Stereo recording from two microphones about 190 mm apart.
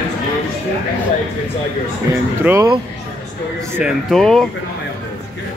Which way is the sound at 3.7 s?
Centre (ahead or behind).